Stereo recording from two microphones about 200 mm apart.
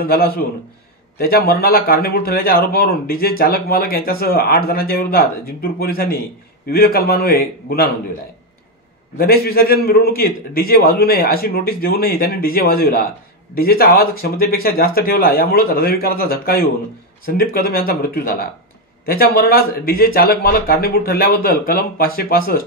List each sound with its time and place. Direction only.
0.0 s a man's voice: 50° left (ahead or behind)
9.1 s a man's voice: 50° left (ahead or behind)